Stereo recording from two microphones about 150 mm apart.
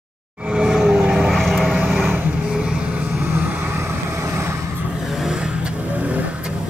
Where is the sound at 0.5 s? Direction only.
5° right (ahead or behind).